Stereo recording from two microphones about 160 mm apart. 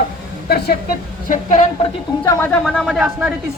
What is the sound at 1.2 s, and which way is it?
Speech, 50° left (ahead or behind).